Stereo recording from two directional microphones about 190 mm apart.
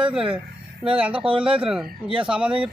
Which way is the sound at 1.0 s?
5° right (ahead or behind).